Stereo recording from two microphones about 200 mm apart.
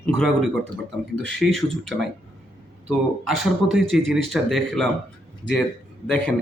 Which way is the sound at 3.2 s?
Centre (ahead or behind).